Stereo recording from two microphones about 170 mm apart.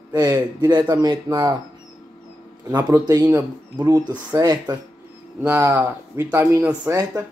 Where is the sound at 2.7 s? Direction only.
25° right (ahead or behind).